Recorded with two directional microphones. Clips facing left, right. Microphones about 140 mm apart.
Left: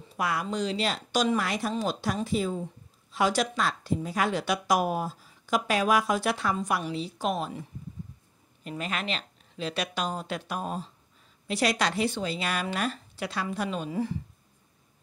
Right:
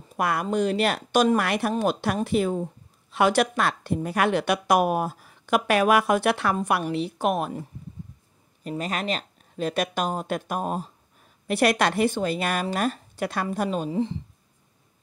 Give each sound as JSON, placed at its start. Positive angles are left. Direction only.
{"t": 0.1, "sound": "a woman's voice", "side_deg": -55}
{"t": 8.6, "sound": "a woman's voice", "side_deg": -40}
{"t": 13.8, "sound": "speech", "side_deg": -25}